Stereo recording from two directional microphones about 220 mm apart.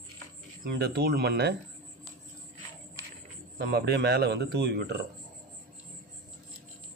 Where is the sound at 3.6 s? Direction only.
45° right (ahead or behind).